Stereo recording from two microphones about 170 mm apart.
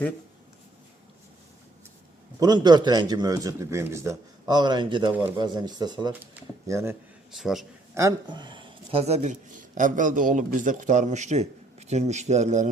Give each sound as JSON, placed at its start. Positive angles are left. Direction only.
{"t": 2.4, "sound": "speech", "side_deg": -25}
{"t": 7.3, "sound": "speech", "side_deg": 0}
{"t": 7.9, "sound": "speech", "side_deg": -20}